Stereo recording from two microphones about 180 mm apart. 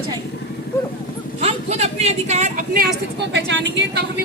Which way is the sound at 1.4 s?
35° right (ahead or behind).